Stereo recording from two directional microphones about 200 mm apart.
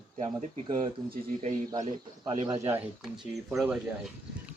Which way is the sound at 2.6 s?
10° right (ahead or behind).